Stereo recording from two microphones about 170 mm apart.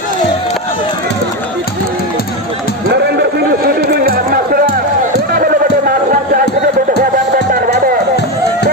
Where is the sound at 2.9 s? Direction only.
75° right (ahead or behind).